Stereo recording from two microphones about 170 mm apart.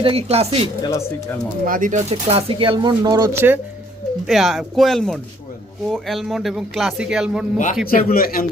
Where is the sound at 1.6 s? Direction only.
50° right (ahead or behind).